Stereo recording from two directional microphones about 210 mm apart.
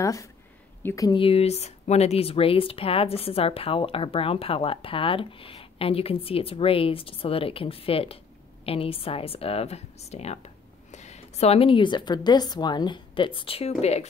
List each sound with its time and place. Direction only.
0.0 s a woman's voice: 15° left (ahead or behind); by 14.0 s 30° left (ahead or behind)